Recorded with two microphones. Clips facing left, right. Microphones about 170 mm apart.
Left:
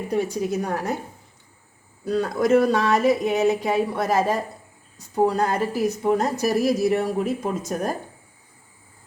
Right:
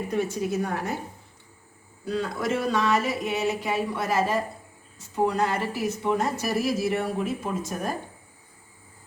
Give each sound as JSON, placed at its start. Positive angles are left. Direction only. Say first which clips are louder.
{"t": 0.1, "sound": "speech", "louder": "left 4 dB", "side_deg": 40}
{"t": 2.0, "sound": "speech", "louder": "left 7 dB", "side_deg": 40}